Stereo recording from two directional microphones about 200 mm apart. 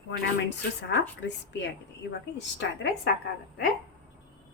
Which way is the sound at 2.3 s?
60° left (ahead or behind).